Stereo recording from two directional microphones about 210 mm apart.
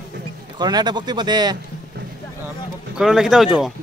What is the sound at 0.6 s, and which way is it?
Speech, 20° right (ahead or behind).